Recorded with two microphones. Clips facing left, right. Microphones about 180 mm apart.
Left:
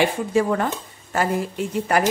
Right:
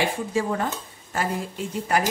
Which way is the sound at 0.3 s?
65° left (ahead or behind).